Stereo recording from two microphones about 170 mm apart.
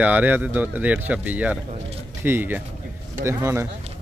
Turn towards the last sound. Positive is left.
turn(degrees=-15)  # may be behind; listen again after turning